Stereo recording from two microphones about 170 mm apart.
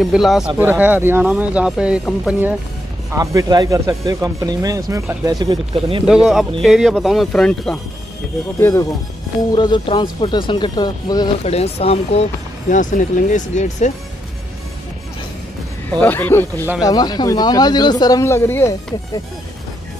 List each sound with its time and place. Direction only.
0.0 s speech: centre (ahead or behind)
3.1 s speech: 20° right (ahead or behind)
6.0 s speech: centre (ahead or behind)
8.5 s a man's voice: 15° left (ahead or behind)
9.5 s speech: 30° left (ahead or behind)
11.4 s speech: 35° left (ahead or behind)
15.9 s a man's voice: 10° left (ahead or behind)
16.8 s speech: 25° left (ahead or behind)